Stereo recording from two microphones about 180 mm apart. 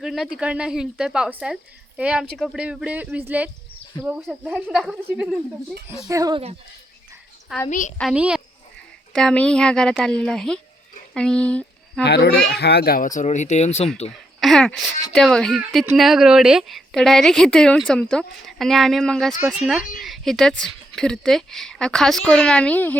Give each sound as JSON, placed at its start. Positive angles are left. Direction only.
{"t": 0.0, "sound": "a woman's voice", "side_deg": 0}
{"t": 6.1, "sound": "speech", "side_deg": -20}
{"t": 7.7, "sound": "a child's voice", "side_deg": 45}
{"t": 8.1, "sound": "speech", "side_deg": -5}
{"t": 9.1, "sound": "a woman's voice", "side_deg": 5}
{"t": 12.0, "sound": "a child's voice", "side_deg": 65}
{"t": 14.4, "sound": "a woman's voice", "side_deg": 5}